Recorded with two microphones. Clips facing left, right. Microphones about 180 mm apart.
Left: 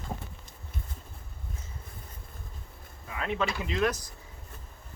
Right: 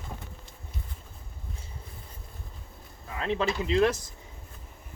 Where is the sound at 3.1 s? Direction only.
30° right (ahead or behind).